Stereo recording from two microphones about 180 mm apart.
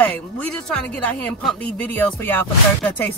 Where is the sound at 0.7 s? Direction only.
5° left (ahead or behind).